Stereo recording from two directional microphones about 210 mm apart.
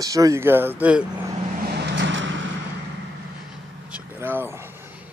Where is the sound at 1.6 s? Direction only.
50° right (ahead or behind).